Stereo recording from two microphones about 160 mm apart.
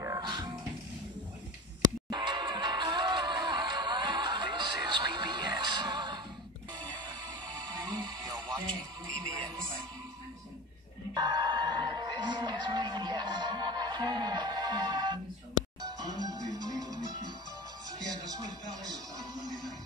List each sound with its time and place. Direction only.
0.0 s music: 20° right (ahead or behind)
1.8 s music: 25° right (ahead or behind)
8.0 s music: 25° right (ahead or behind)
11.1 s music: 30° right (ahead or behind)